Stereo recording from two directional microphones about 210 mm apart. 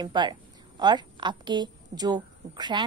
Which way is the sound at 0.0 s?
20° right (ahead or behind).